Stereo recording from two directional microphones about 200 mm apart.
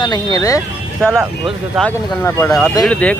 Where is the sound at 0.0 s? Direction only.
20° left (ahead or behind).